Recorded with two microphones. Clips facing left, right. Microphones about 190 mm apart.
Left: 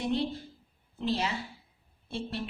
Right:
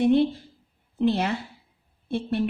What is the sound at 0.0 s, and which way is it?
A woman's voice, 55° right (ahead or behind).